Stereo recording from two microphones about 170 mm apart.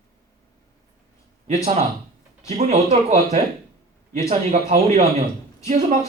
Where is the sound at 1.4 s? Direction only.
45° right (ahead or behind).